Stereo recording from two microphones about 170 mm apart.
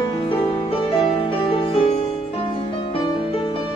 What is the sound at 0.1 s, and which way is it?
Music, 30° left (ahead or behind).